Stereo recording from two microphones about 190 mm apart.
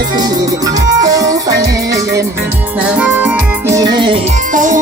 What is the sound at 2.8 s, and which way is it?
Music, 5° right (ahead or behind).